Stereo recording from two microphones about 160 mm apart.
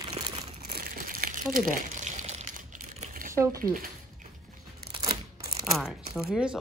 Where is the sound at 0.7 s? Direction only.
65° right (ahead or behind).